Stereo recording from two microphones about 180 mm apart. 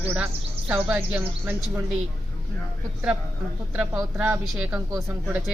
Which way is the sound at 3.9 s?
10° right (ahead or behind).